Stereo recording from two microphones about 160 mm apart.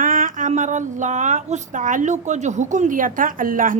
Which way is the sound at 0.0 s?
55° right (ahead or behind).